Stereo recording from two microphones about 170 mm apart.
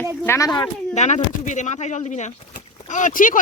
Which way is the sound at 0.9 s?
45° left (ahead or behind).